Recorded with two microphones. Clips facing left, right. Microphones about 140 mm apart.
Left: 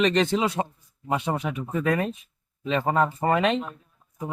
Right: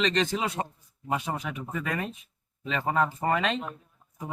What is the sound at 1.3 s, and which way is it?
Speech, 30° left (ahead or behind).